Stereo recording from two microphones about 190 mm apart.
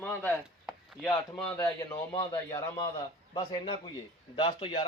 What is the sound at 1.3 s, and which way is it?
A man's voice, 5° left (ahead or behind).